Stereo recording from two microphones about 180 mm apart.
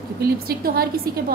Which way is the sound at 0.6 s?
55° right (ahead or behind).